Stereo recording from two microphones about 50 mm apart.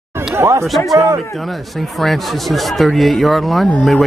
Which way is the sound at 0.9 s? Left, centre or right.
Right.